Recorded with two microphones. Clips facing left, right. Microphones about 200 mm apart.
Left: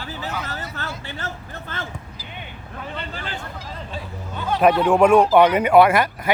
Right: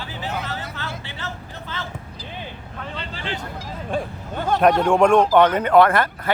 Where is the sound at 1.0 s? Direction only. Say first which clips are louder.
Left 1 dB; 50° left (ahead or behind).